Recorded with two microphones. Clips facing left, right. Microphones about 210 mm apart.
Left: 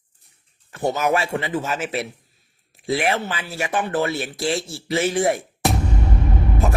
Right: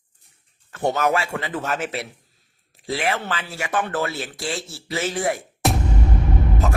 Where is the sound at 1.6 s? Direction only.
Centre (ahead or behind).